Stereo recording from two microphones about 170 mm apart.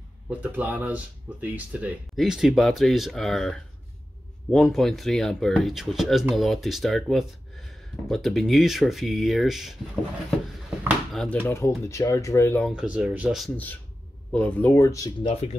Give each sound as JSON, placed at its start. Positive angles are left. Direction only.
{"t": 0.3, "sound": "speech", "side_deg": -10}
{"t": 11.1, "sound": "speech", "side_deg": 10}
{"t": 12.6, "sound": "speech", "side_deg": -5}
{"t": 14.3, "sound": "speech", "side_deg": 10}